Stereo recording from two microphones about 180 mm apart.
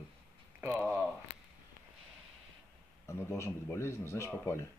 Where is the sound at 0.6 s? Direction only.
10° right (ahead or behind).